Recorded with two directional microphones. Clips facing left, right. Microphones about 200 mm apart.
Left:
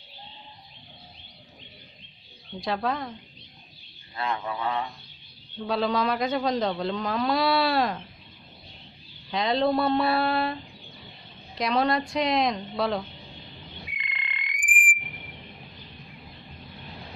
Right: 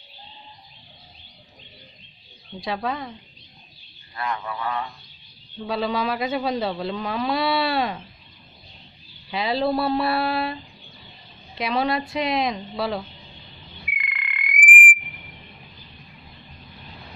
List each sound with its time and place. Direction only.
2.6 s a man's voice: centre (ahead or behind)
4.1 s a sound: 25° left (ahead or behind)
5.6 s a man's voice: centre (ahead or behind)
9.3 s a man's voice: 5° right (ahead or behind)
13.9 s frog: 25° left (ahead or behind)